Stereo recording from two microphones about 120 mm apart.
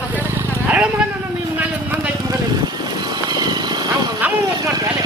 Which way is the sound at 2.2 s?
35° right (ahead or behind).